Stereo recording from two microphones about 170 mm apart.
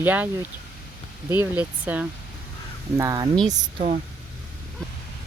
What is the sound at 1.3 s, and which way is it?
Speech, 10° right (ahead or behind).